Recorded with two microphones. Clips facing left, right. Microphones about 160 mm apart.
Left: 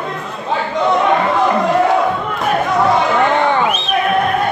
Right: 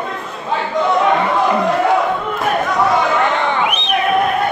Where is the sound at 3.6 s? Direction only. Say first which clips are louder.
Left 2 dB; 15° right (ahead or behind).